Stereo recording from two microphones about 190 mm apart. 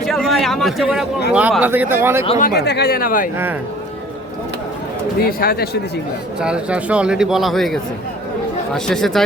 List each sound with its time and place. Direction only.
0.0 s a sound: centre (ahead or behind)
1.3 s speech: 5° right (ahead or behind)
2.4 s speech: 55° left (ahead or behind)
5.4 s speech: 55° left (ahead or behind)
6.4 s speech: 5° right (ahead or behind)